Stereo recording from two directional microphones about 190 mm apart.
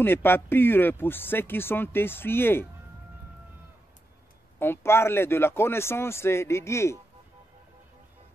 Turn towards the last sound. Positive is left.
turn(degrees=15)  # may be behind; listen again after turning